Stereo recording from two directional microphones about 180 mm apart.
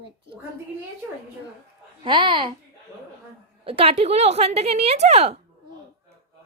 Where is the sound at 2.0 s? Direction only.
25° right (ahead or behind).